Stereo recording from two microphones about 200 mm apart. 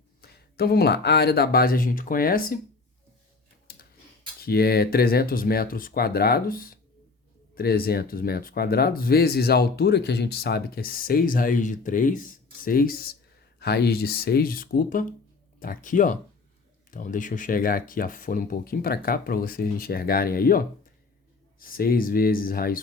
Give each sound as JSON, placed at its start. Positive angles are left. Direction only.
{"t": 0.2, "sound": "speech", "side_deg": 50}
{"t": 4.4, "sound": "speech", "side_deg": 50}